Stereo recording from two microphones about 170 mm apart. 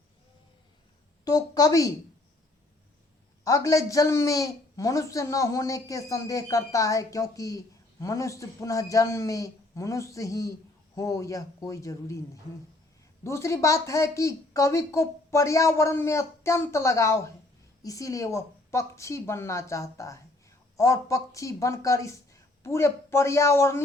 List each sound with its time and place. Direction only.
1.2 s a woman's voice: 20° left (ahead or behind)
3.4 s speech: 20° left (ahead or behind)